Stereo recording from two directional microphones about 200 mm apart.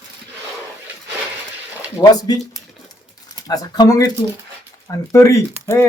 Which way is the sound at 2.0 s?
20° left (ahead or behind).